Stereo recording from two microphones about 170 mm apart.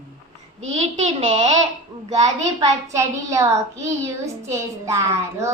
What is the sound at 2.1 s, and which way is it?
A child's voice, 20° right (ahead or behind).